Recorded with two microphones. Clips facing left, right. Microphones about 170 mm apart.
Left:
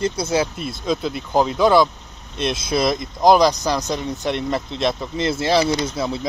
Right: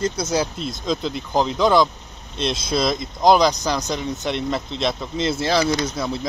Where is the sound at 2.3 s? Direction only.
55° left (ahead or behind).